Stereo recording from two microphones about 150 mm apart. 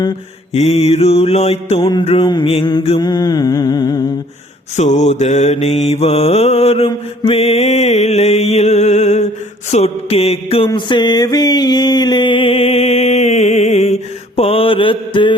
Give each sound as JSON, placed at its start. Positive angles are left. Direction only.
{"t": 0.5, "sound": "mantra", "side_deg": 45}
{"t": 2.2, "sound": "mantra", "side_deg": 30}
{"t": 4.8, "sound": "mantra", "side_deg": 50}
{"t": 10.7, "sound": "mantra", "side_deg": 30}